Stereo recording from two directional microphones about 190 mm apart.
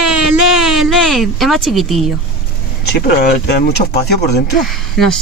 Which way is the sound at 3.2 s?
55° left (ahead or behind).